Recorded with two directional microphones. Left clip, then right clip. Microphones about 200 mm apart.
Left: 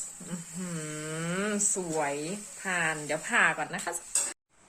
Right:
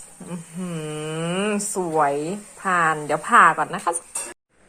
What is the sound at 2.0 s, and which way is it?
Speech, 10° right (ahead or behind).